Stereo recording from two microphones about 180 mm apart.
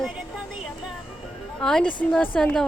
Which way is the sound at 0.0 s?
5° right (ahead or behind).